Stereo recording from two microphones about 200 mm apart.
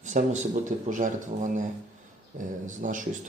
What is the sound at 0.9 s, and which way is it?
A man's voice, 40° right (ahead or behind).